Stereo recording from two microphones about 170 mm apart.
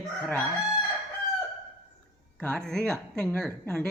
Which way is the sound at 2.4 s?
5° left (ahead or behind).